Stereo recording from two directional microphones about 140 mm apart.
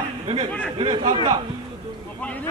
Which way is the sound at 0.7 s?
35° right (ahead or behind).